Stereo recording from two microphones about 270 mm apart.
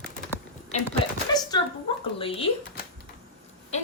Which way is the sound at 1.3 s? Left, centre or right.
Centre.